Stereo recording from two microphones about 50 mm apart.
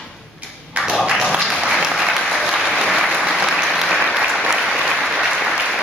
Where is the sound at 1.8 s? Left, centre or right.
Centre.